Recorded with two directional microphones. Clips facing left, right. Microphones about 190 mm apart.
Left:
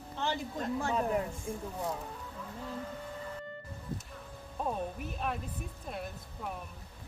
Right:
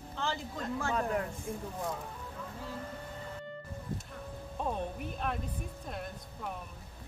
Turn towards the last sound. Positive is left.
turn(degrees=5)  # may be behind; listen again after turning